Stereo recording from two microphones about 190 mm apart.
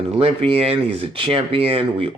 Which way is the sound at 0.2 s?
30° right (ahead or behind).